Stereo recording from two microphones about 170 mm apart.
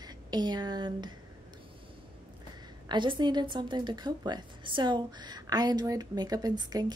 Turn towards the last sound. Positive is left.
turn(degrees=-25)  # may be behind; listen again after turning